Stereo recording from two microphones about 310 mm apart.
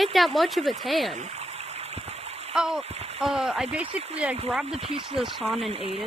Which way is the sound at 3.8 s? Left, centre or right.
Centre.